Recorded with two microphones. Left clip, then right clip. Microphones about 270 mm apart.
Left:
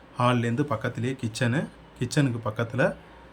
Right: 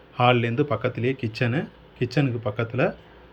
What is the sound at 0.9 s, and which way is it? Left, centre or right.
Speech, left.